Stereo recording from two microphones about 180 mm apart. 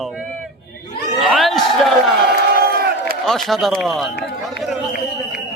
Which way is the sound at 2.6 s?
55° right (ahead or behind).